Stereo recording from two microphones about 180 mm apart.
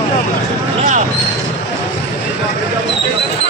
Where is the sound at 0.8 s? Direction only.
45° right (ahead or behind).